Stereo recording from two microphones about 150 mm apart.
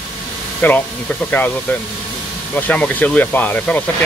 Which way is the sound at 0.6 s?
10° left (ahead or behind).